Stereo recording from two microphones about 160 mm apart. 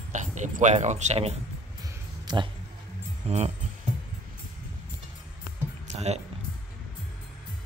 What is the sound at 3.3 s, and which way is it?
Music, 45° right (ahead or behind).